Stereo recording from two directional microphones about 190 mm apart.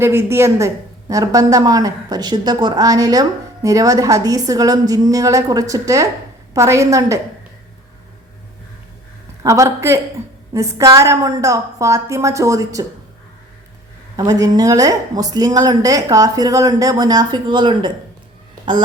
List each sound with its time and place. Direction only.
0.0 s a woman's voice: 15° right (ahead or behind)
9.4 s a woman's voice: 15° right (ahead or behind)
14.2 s speech: 20° right (ahead or behind)